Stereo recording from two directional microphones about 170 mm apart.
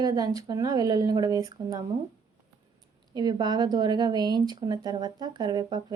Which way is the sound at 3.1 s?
25° right (ahead or behind).